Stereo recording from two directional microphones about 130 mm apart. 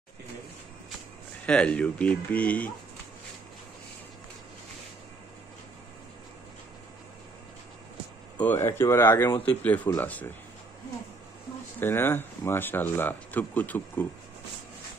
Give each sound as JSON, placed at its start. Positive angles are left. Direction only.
{"t": 1.4, "sound": "speech", "side_deg": 10}
{"t": 8.5, "sound": "speech", "side_deg": 20}
{"t": 11.8, "sound": "speech", "side_deg": 15}